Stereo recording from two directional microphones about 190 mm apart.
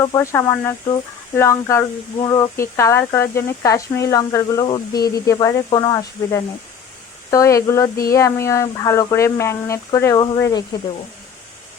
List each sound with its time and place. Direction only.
0.0 s speech: 15° left (ahead or behind)